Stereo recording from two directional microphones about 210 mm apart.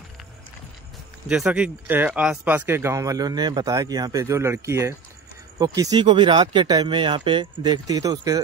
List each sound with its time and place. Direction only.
1.3 s speech: 5° right (ahead or behind)